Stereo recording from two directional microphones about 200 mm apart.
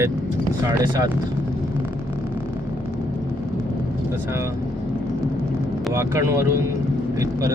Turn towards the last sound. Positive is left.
turn(degrees=-15)  # may be behind; listen again after turning